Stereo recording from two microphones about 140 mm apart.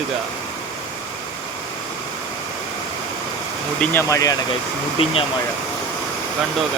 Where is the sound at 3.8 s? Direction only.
15° left (ahead or behind).